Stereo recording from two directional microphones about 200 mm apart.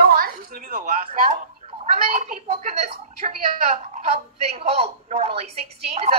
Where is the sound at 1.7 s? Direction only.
30° right (ahead or behind).